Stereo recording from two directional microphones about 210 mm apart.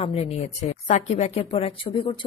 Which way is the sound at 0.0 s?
30° left (ahead or behind).